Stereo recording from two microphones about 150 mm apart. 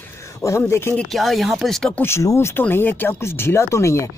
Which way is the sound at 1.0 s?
Centre (ahead or behind).